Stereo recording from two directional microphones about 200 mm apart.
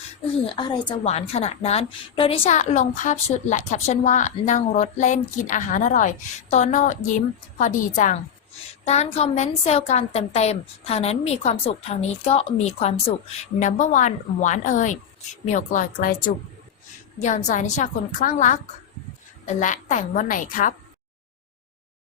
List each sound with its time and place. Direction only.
0.4 s a woman's voice: 25° left (ahead or behind); by 20.7 s 40° left (ahead or behind)